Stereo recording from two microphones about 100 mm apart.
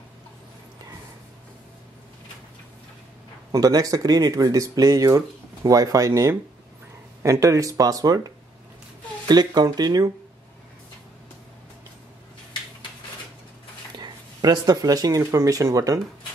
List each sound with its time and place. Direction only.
3.5 s speech: 40° right (ahead or behind)
9.3 s speech: 45° right (ahead or behind)
13.9 s speech: 45° right (ahead or behind)